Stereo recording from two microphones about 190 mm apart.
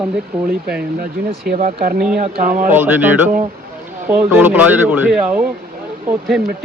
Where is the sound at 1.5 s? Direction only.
50° right (ahead or behind).